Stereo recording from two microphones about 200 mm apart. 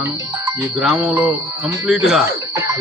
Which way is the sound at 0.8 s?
5° right (ahead or behind).